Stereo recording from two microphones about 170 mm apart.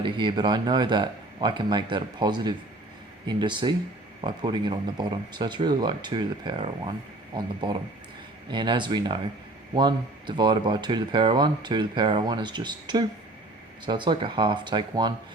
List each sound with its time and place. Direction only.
0.0 s speech: 30° right (ahead or behind)
8.4 s speech: 25° right (ahead or behind)